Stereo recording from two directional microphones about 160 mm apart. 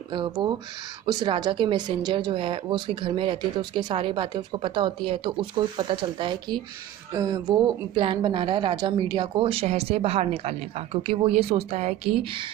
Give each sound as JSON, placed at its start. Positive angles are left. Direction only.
{"t": 0.1, "sound": "a woman's voice", "side_deg": -30}